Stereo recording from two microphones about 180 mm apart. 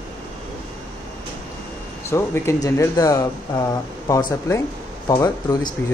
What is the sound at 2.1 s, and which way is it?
Speech, 15° left (ahead or behind).